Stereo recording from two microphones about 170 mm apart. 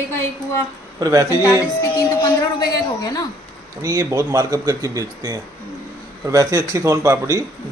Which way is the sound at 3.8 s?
20° right (ahead or behind).